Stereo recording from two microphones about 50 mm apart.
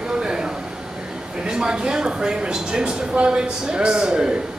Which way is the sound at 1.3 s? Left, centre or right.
Centre.